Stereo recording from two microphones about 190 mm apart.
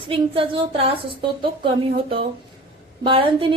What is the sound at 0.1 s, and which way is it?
Speech, 25° right (ahead or behind).